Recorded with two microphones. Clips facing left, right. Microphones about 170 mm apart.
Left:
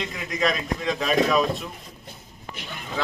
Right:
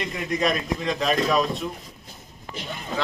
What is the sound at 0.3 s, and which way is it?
A man's voice, centre (ahead or behind).